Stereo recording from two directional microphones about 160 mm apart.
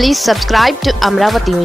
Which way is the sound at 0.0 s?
Centre (ahead or behind).